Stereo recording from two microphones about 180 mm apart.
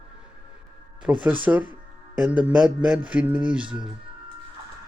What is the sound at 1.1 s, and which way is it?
A man's voice, 10° right (ahead or behind).